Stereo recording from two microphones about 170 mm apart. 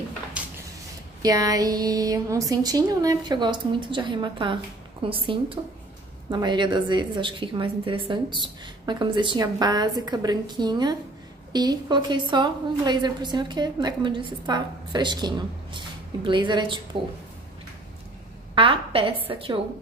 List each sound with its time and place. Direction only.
0.4 s a sound: 5° right (ahead or behind)
1.2 s a woman's voice: 20° right (ahead or behind)
18.5 s a woman's voice: 30° right (ahead or behind)